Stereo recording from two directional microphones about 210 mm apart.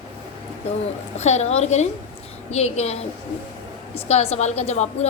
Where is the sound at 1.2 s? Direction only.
30° left (ahead or behind).